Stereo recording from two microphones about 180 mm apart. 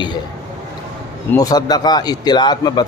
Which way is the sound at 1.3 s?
20° left (ahead or behind).